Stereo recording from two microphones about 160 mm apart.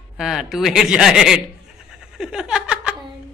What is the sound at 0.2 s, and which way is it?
Speech, centre (ahead or behind).